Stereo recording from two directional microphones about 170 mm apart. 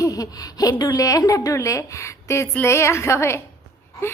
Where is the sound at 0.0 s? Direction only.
20° left (ahead or behind).